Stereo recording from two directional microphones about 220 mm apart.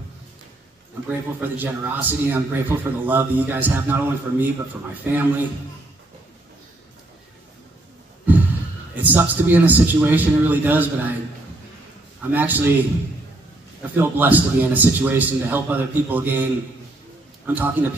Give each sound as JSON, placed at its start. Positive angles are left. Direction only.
{"t": 1.0, "sound": "a man's voice", "side_deg": -10}
{"t": 8.3, "sound": "sigh", "side_deg": -10}
{"t": 8.9, "sound": "a man's voice", "side_deg": -10}
{"t": 12.2, "sound": "a man's voice", "side_deg": -10}
{"t": 13.9, "sound": "a man's voice", "side_deg": -10}
{"t": 17.5, "sound": "a man's voice", "side_deg": -10}